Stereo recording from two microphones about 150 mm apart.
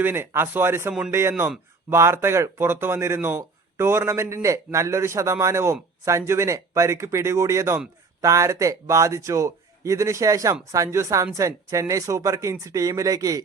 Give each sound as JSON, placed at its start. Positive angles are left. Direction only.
{"t": 0.0, "sound": "a man's voice", "side_deg": -15}